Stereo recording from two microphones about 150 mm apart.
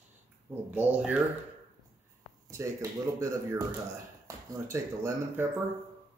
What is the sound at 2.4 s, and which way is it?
Speech, 20° right (ahead or behind).